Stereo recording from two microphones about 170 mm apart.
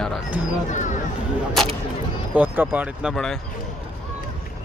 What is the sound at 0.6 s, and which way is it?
Speech, 45° left (ahead or behind).